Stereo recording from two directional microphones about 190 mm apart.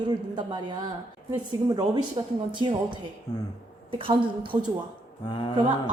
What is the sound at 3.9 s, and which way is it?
Speech, 25° right (ahead or behind).